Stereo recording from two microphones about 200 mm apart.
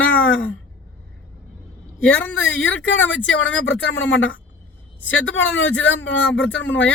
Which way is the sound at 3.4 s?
70° left (ahead or behind).